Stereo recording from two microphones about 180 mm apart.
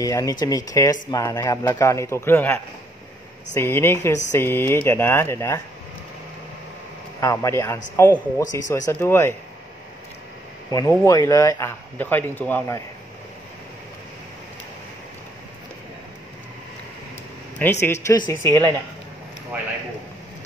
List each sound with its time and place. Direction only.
0.0 s speech: 20° left (ahead or behind)
7.2 s speech: 15° left (ahead or behind)
10.7 s speech: 20° left (ahead or behind)
17.6 s speech: 10° left (ahead or behind)
18.0 s speech: 20° left (ahead or behind)